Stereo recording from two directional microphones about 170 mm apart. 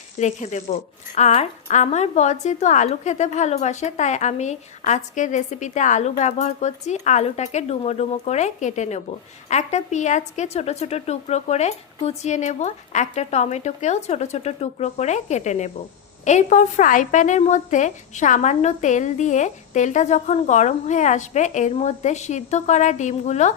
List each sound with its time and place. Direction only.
0.2 s speech: 45° left (ahead or behind)